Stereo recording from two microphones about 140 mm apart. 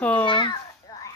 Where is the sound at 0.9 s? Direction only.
25° left (ahead or behind).